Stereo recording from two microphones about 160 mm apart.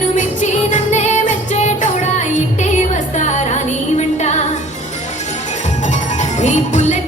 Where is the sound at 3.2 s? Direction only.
45° left (ahead or behind).